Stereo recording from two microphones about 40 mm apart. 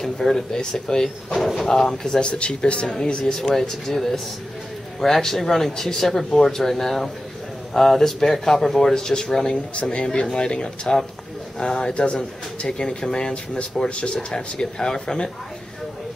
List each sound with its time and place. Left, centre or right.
0.0 s speech: centre
1.3 s speech: centre
1.7 s speech: centre
2.1 s speech: left
3.5 s speech: centre
8.9 s speech: centre